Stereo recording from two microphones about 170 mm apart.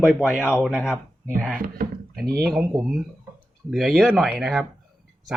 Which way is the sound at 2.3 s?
70° right (ahead or behind).